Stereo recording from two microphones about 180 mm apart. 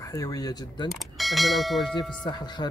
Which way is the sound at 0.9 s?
Centre (ahead or behind).